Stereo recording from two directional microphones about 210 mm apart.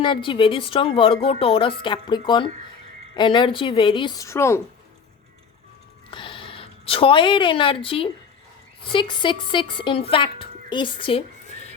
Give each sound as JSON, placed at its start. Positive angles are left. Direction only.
{"t": 0.0, "sound": "a woman's voice", "side_deg": 25}
{"t": 6.1, "sound": "speech", "side_deg": 25}